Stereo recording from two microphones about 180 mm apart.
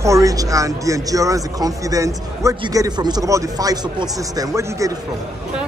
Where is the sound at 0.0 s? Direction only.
20° right (ahead or behind).